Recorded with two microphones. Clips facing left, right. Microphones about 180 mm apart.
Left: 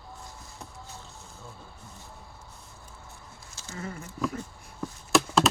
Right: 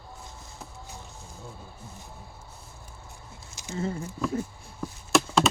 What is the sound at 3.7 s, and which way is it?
Speech, 25° right (ahead or behind).